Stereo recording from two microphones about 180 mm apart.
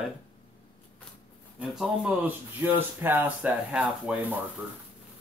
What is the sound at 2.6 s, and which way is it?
Speech, 10° right (ahead or behind).